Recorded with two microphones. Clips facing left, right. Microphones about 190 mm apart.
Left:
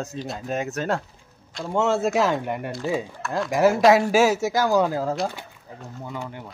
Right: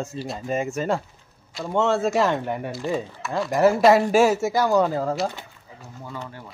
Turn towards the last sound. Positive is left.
turn(degrees=15)  # may be behind; listen again after turning